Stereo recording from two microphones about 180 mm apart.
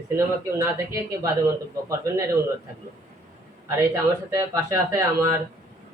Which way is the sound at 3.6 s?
15° right (ahead or behind).